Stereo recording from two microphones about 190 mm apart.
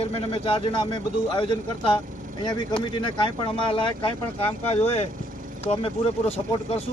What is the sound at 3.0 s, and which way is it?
A man's voice, 25° left (ahead or behind).